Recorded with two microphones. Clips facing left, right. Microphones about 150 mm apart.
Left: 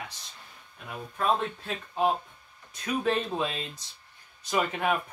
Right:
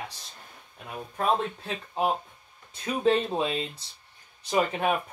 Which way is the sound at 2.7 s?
25° right (ahead or behind).